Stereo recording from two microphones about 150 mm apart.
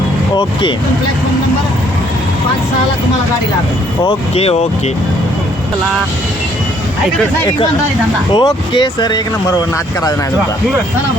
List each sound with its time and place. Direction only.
4.0 s speech: 40° left (ahead or behind)
8.3 s speech: 30° left (ahead or behind)